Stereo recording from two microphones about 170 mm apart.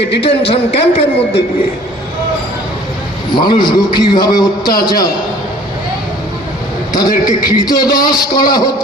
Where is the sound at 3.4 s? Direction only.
25° left (ahead or behind).